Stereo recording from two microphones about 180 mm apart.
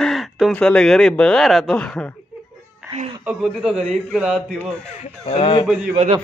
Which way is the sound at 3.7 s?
40° right (ahead or behind).